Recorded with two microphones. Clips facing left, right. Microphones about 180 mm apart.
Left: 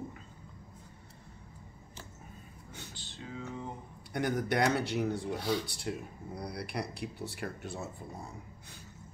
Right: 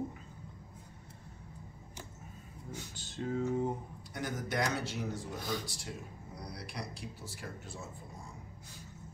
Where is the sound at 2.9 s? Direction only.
45° right (ahead or behind).